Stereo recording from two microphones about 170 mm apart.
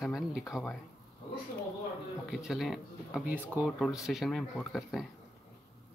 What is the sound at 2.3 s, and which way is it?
Speech, centre (ahead or behind).